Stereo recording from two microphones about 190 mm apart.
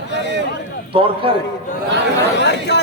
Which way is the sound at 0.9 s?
30° right (ahead or behind).